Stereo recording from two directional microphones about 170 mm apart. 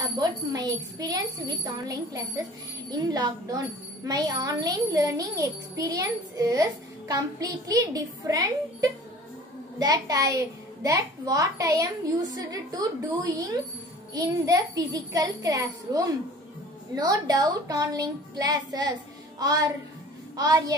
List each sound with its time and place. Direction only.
0.2 s speech: 20° right (ahead or behind)